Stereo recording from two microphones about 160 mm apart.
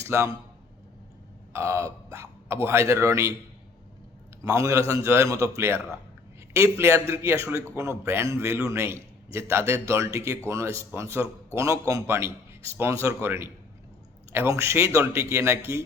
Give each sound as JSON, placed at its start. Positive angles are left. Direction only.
{"t": 0.0, "sound": "speech", "side_deg": -15}
{"t": 1.5, "sound": "a man's voice", "side_deg": -20}
{"t": 4.4, "sound": "a man's voice", "side_deg": -20}